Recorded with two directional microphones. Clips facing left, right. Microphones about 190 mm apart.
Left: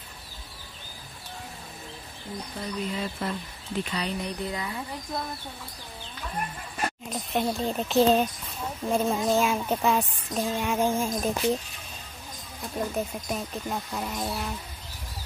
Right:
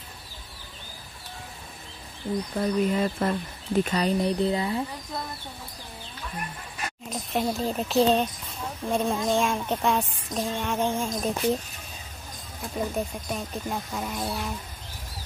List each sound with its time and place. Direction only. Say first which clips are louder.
2.6 s speech: right 7 dB; 50° right (ahead or behind)
4.4 s speech: right 7 dB; 30° right (ahead or behind)
7.1 s a woman's voice: right 2 dB; centre (ahead or behind)
12.7 s a woman's voice: right 1 dB; centre (ahead or behind)